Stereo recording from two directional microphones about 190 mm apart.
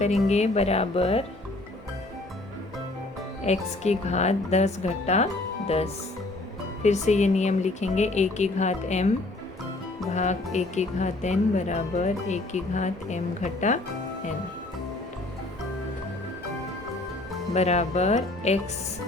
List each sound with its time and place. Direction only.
0.0 s speech: 35° left (ahead or behind)
3.4 s speech: 35° left (ahead or behind)
10.1 s speech: 35° left (ahead or behind)
17.5 s speech: 35° left (ahead or behind)